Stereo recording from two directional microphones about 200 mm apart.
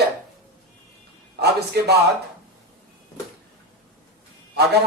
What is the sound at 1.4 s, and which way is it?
Speech, 55° right (ahead or behind).